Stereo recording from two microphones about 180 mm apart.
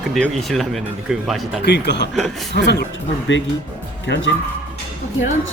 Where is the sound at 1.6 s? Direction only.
70° left (ahead or behind).